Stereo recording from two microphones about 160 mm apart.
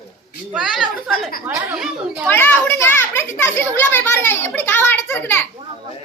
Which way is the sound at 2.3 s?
10° left (ahead or behind).